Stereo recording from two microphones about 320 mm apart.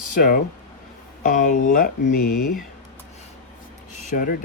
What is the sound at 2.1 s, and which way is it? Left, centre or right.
Speech, left.